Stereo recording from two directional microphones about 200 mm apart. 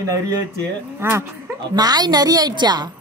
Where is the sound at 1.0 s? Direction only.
15° right (ahead or behind).